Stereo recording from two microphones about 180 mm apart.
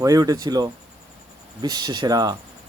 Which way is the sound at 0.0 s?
20° right (ahead or behind).